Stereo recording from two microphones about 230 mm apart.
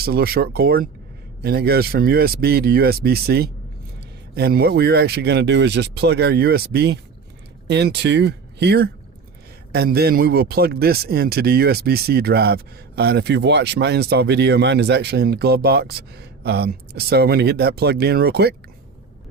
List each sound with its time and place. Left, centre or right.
0.0 s speech: right